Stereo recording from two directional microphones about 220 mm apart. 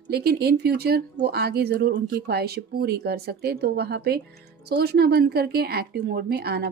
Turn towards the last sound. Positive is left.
turn(degrees=-45)  # may be behind; listen again after turning